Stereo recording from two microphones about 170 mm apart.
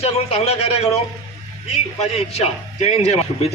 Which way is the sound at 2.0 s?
35° left (ahead or behind).